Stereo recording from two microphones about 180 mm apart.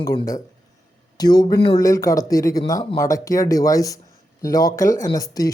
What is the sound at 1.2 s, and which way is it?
Speech, 20° left (ahead or behind).